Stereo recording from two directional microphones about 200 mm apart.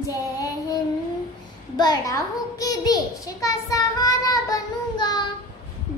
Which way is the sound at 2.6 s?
20° left (ahead or behind).